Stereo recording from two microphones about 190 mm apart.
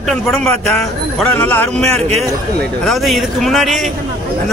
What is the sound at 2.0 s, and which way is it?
Speech, 35° right (ahead or behind).